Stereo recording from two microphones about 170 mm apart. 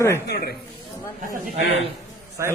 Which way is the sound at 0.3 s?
65° left (ahead or behind).